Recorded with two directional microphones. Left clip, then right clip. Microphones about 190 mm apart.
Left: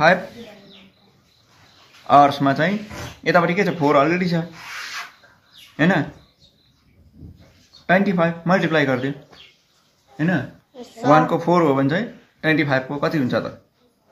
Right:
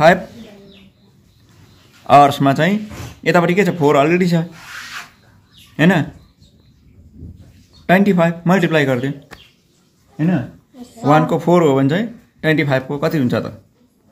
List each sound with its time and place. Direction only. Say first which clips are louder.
2.0 s speech: right 4 dB; 40° right (ahead or behind)
5.8 s speech: right 3 dB; 40° right (ahead or behind)
7.8 s speech: right 4 dB; 45° right (ahead or behind)
11.1 s speech: right 2 dB; 35° right (ahead or behind)